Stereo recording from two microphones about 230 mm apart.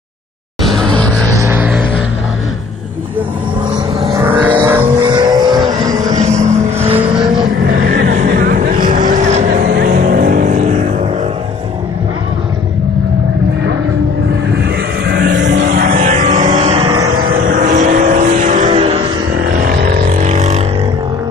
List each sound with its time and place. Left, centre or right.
0.7 s music: centre
1.3 s a sound: centre
4.1 s music: centre
5.0 s vehicle: centre
6.1 s vehicle: right
7.9 s vehicle: right
14.6 s vehicle: right; by 17.1 s centre
17.5 s vehicle: right
19.6 s vehicle: right